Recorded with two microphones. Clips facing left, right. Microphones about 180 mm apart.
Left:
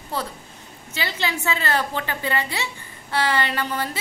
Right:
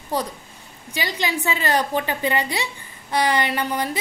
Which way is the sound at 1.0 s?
15° right (ahead or behind).